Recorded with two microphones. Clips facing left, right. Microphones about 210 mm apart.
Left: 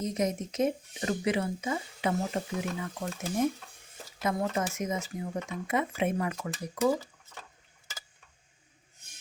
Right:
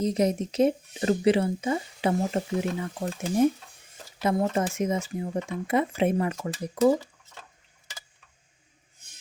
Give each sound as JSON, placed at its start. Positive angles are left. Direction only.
{"t": 0.0, "sound": "speech", "side_deg": -35}